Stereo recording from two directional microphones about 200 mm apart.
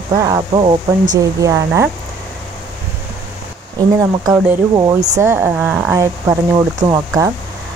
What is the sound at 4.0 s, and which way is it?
Speech, 15° right (ahead or behind).